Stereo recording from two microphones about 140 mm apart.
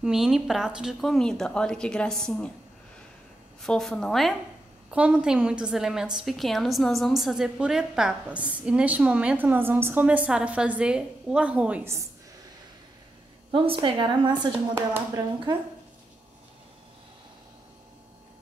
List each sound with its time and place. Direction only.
0.0 s a woman's voice: 5° right (ahead or behind)
3.6 s a woman's voice: 5° left (ahead or behind)
4.9 s a woman's voice: 10° right (ahead or behind)
13.5 s a woman's voice: 35° right (ahead or behind)